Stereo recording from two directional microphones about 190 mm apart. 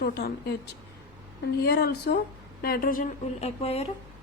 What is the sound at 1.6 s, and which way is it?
A woman's voice, 60° left (ahead or behind).